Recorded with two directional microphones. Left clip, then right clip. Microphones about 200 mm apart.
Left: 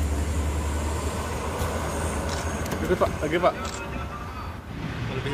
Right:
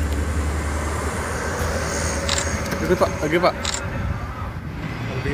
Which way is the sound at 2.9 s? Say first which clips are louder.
Right 5 dB; 40° right (ahead or behind).